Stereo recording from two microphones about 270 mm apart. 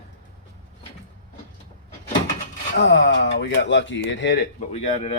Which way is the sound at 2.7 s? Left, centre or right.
Left.